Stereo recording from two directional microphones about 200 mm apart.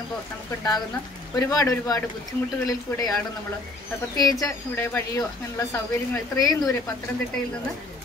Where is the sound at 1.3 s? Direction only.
15° left (ahead or behind).